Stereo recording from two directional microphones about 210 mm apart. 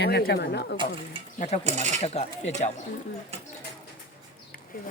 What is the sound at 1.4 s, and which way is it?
Speech, 30° left (ahead or behind).